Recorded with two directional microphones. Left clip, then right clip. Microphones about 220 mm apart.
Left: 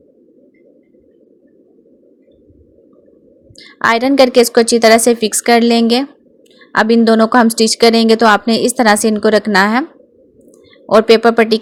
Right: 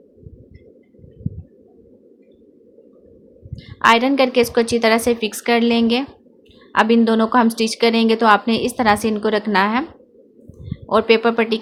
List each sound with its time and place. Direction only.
3.5 s speech: 30° left (ahead or behind)
10.8 s speech: 25° left (ahead or behind)